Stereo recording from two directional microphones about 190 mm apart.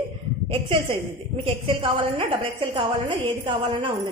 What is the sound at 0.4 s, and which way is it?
A woman's voice, 30° right (ahead or behind).